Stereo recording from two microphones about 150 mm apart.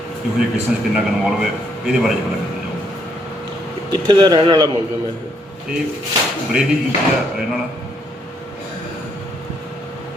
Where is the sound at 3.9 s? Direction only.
30° right (ahead or behind).